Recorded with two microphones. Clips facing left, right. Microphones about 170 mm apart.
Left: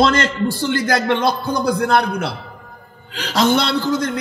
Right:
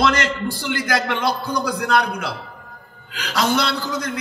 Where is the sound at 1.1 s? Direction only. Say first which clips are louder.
Left 4 dB; 30° left (ahead or behind).